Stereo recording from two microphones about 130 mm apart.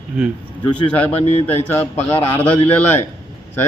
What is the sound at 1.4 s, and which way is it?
Speech, 15° left (ahead or behind).